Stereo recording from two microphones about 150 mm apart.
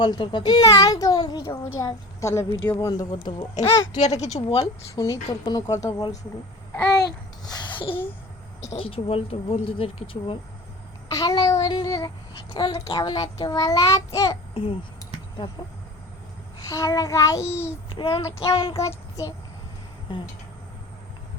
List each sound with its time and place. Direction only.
0.0 s a child's voice: 30° left (ahead or behind)
4.0 s speech: 50° left (ahead or behind)
4.4 s speech: 35° left (ahead or behind)
4.9 s a child's voice: 25° left (ahead or behind)
7.4 s a sound: 25° left (ahead or behind)
8.7 s speech: 35° left (ahead or behind)
11.1 s a child's voice: 25° left (ahead or behind)
16.6 s a child's voice: 20° left (ahead or behind)
17.8 s a child's voice: 35° left (ahead or behind); by 19.3 s 20° left (ahead or behind)